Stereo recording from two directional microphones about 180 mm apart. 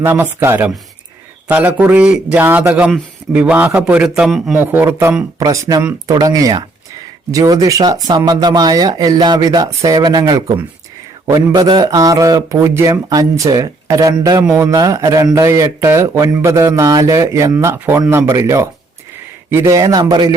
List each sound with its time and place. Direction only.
0.0 s a man's voice: 10° right (ahead or behind)